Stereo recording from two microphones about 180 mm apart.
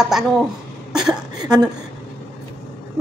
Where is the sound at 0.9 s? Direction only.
5° right (ahead or behind).